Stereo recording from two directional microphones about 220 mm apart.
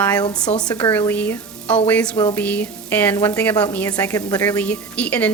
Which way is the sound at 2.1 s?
20° left (ahead or behind).